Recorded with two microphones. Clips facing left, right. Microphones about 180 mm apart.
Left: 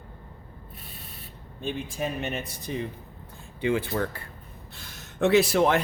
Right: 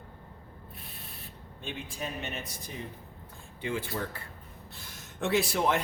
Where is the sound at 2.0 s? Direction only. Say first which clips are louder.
Left 6 dB; 55° left (ahead or behind).